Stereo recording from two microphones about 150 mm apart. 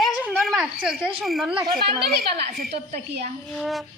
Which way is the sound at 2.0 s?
90° right.